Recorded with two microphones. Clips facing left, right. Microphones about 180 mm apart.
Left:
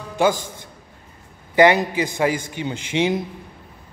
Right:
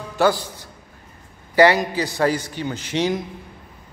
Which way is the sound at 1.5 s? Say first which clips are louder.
Even; 20° left (ahead or behind).